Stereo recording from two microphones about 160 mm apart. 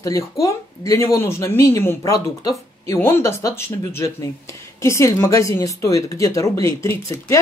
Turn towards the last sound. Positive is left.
turn(degrees=20)  # may be behind; listen again after turning